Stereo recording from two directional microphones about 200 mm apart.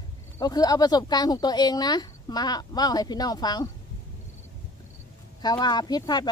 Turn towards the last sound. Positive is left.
turn(degrees=20)  # may be behind; listen again after turning